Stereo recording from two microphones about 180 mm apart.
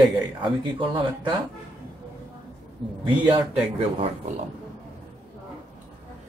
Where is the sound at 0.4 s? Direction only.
25° right (ahead or behind).